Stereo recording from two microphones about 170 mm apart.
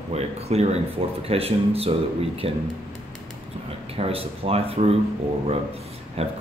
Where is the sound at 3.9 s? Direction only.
35° right (ahead or behind).